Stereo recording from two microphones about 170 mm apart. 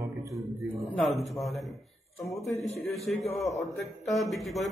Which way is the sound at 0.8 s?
Centre (ahead or behind).